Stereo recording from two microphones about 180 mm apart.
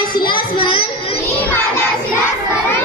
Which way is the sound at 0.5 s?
25° left (ahead or behind).